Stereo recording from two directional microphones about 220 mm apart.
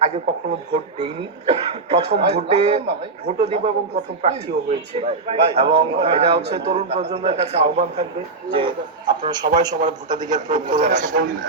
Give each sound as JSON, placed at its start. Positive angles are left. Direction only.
{"t": 0.7, "sound": "speech", "side_deg": -25}
{"t": 10.8, "sound": "a man's voice", "side_deg": -35}